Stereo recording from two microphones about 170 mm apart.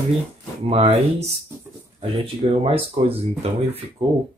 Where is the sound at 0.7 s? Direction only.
35° right (ahead or behind).